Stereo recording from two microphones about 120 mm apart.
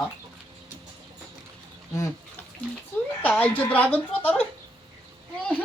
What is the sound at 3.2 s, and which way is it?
Speech, 15° left (ahead or behind).